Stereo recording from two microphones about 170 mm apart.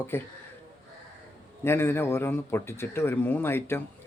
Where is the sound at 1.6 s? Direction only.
15° left (ahead or behind).